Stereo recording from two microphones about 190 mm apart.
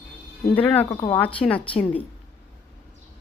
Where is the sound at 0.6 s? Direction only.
10° left (ahead or behind).